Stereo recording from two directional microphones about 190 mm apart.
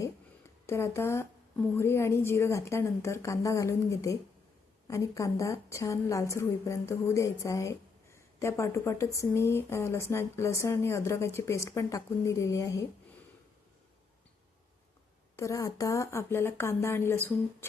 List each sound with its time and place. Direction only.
0.0 s a sound: 15° left (ahead or behind)
1.7 s a woman's voice: 15° left (ahead or behind)
15.4 s a woman's voice: 15° left (ahead or behind)